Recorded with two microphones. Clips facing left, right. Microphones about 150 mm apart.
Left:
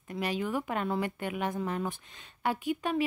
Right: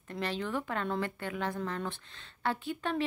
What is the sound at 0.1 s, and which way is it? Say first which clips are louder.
Speech: left 3 dB; 10° left (ahead or behind).